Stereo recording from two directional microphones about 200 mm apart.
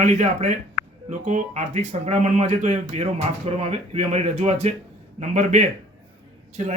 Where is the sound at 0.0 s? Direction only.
35° right (ahead or behind).